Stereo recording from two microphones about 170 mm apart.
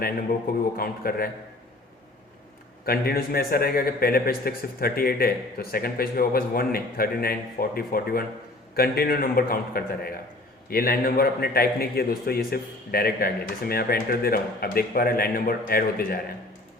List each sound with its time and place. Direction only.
0.8 s a man's voice: 60° left (ahead or behind)
2.8 s a man's voice: 60° left (ahead or behind)